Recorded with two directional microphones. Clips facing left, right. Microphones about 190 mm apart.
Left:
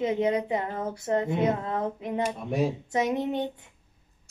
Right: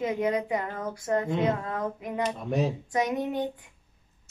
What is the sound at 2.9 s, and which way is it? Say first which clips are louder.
Speech: left 1 dB; 25° left (ahead or behind).